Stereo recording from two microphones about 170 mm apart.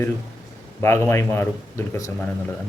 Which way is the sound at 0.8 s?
15° left (ahead or behind).